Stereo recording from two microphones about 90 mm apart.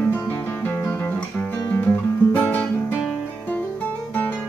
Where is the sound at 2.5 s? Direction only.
20° left (ahead or behind).